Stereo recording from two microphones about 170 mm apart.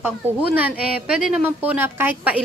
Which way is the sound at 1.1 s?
10° right (ahead or behind).